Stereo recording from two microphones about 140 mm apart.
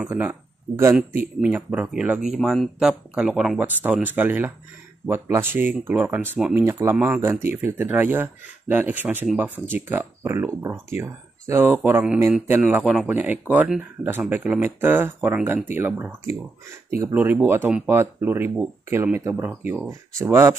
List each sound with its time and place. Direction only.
0.1 s speech: 15° right (ahead or behind)